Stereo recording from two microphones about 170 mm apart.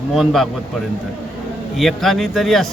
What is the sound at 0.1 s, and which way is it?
Speech, centre (ahead or behind).